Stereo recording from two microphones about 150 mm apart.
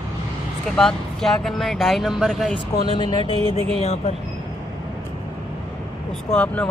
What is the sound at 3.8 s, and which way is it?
Speech, 45° left (ahead or behind).